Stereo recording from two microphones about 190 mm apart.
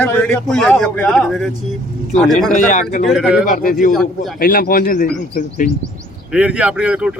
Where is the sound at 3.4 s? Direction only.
45° left (ahead or behind).